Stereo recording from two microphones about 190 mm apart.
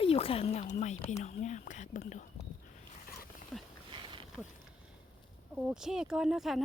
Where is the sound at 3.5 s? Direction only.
Centre (ahead or behind).